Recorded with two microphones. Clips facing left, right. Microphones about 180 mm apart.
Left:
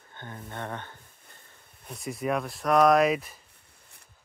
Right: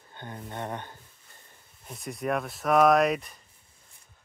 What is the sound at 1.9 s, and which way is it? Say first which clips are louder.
Speech: left 1 dB; centre (ahead or behind).